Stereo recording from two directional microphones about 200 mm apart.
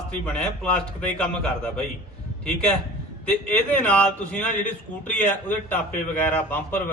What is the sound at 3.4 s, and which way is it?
A man's voice, 5° left (ahead or behind).